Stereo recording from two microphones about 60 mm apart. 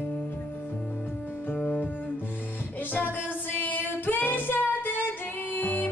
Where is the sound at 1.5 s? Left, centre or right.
Left.